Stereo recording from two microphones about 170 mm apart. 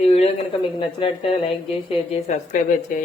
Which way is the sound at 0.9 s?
35° left (ahead or behind).